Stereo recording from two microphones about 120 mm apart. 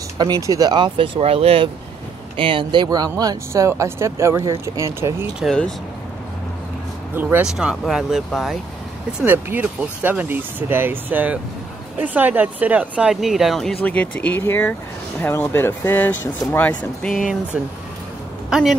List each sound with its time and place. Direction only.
0.2 s speech: 30° right (ahead or behind)
5.4 s speech: 5° left (ahead or behind)
7.2 s speech: 15° right (ahead or behind)
7.4 s speech: 5° right (ahead or behind)
9.2 s speech: 15° right (ahead or behind); by 13.7 s centre (ahead or behind)
13.8 s speech: 15° left (ahead or behind)
18.5 s speech: centre (ahead or behind)